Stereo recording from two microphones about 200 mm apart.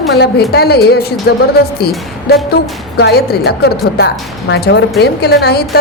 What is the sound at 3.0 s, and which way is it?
A woman's voice, 55° left (ahead or behind).